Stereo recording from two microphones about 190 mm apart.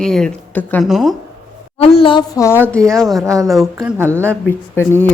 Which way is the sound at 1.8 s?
30° left (ahead or behind).